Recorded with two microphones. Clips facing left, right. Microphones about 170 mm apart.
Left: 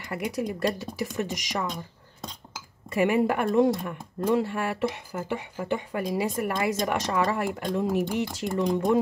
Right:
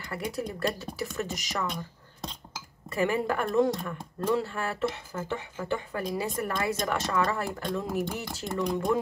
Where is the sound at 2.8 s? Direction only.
20° left (ahead or behind).